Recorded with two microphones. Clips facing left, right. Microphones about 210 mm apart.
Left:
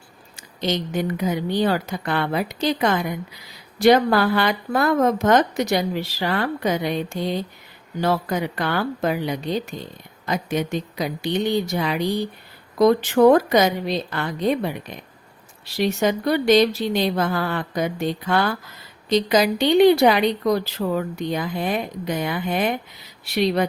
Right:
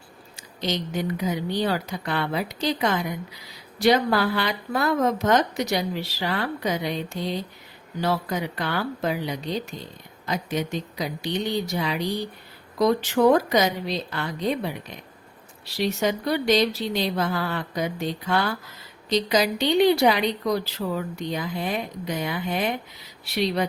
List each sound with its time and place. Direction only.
0.3 s speech: 55° left (ahead or behind)
15.8 s speech: 55° left (ahead or behind)